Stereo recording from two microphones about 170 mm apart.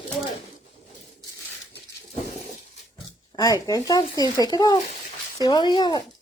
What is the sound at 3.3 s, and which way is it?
Speech, 20° left (ahead or behind).